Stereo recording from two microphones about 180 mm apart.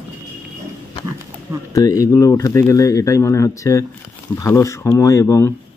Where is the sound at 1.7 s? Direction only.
20° left (ahead or behind).